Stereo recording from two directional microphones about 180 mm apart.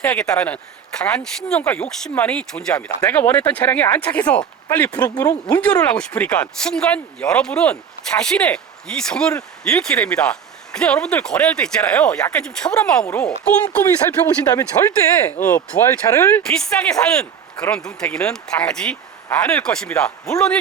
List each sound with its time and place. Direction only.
0.0 s speech: 5° left (ahead or behind)
4.9 s speech: 20° left (ahead or behind)
5.8 s speech: 5° left (ahead or behind)
14.3 s speech: 15° left (ahead or behind)
16.5 s speech: 5° left (ahead or behind)